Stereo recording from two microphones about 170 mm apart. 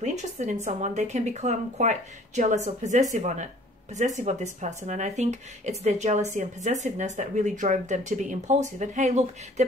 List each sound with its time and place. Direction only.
0.0 s speech: 45° right (ahead or behind)